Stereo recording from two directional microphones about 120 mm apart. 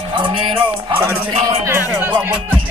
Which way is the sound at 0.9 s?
20° right (ahead or behind).